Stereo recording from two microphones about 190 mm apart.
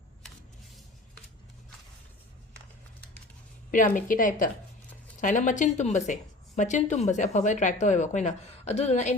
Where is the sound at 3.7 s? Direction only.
45° left (ahead or behind).